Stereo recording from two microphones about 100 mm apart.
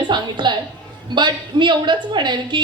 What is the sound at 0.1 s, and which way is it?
A woman's voice, 50° right (ahead or behind).